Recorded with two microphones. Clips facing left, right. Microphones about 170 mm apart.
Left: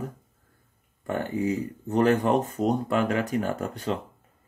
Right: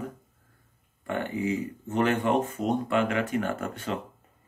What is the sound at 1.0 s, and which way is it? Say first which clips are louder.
Speech: left 2 dB; 40° left (ahead or behind).